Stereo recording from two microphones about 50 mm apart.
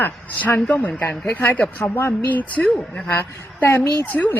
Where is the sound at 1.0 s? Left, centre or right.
Left.